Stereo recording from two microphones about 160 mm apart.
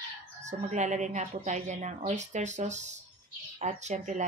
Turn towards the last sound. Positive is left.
turn(degrees=-45)  # may be behind; listen again after turning